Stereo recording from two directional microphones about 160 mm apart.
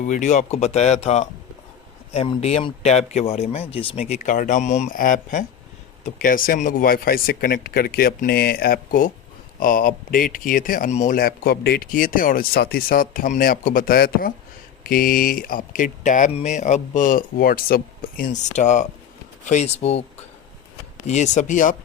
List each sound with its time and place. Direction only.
0.1 s speech: 50° left (ahead or behind)
11.2 s speech: 70° left (ahead or behind); by 20.1 s 40° left (ahead or behind)
21.1 s speech: 45° left (ahead or behind)